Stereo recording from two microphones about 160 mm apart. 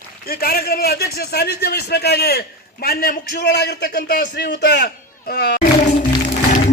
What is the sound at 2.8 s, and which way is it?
A man's voice, 70° left (ahead or behind).